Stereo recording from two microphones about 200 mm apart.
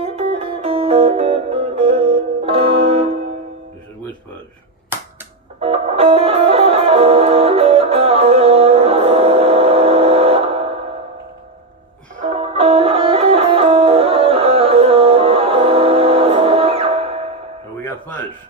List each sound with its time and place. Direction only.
0.0 s music: 30° right (ahead or behind)
5.6 s music: 30° right (ahead or behind)
12.2 s music: 30° right (ahead or behind)